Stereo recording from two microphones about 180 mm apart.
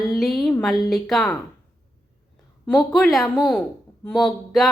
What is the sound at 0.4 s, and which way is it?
Speech, centre (ahead or behind).